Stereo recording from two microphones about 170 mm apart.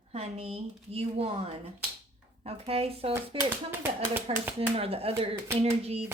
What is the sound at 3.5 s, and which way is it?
Speech, 10° right (ahead or behind).